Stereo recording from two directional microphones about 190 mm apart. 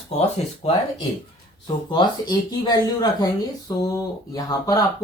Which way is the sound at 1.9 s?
25° left (ahead or behind).